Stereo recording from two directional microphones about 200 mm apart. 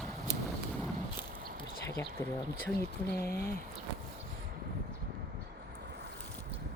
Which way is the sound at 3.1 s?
50° left (ahead or behind).